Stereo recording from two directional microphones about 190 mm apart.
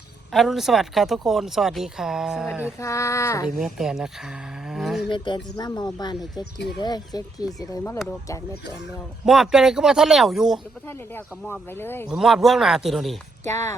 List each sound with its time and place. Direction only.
0.3 s speech: centre (ahead or behind)
2.8 s speech: 15° left (ahead or behind)
3.4 s speech: 5° right (ahead or behind)
5.0 s speech: 25° left (ahead or behind)
9.2 s speech: centre (ahead or behind)
10.8 s speech: 10° left (ahead or behind)
12.0 s speech: centre (ahead or behind)
13.5 s speech: 15° left (ahead or behind)